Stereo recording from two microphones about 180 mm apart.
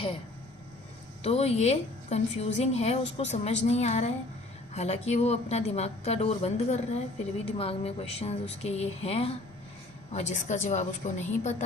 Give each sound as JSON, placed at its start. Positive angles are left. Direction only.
{"t": 1.2, "sound": "speech", "side_deg": 35}